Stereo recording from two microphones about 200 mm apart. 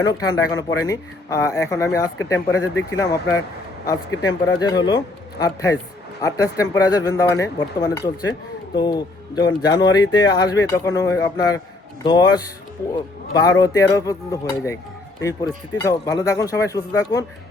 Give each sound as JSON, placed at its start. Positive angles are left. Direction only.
{"t": 0.0, "sound": "speech", "side_deg": 20}
{"t": 15.8, "sound": "speech", "side_deg": 20}